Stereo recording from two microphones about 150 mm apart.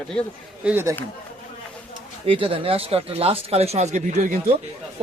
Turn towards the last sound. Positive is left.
turn(degrees=-50)  # may be behind; listen again after turning